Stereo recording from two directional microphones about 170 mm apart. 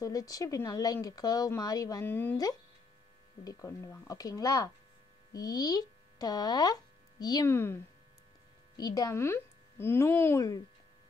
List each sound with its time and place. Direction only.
0.0 s speech: 20° left (ahead or behind)